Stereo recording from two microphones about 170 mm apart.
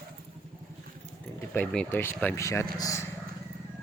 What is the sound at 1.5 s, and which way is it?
Speech, 10° left (ahead or behind).